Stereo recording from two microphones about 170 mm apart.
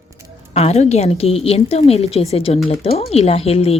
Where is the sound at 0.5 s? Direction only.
40° left (ahead or behind).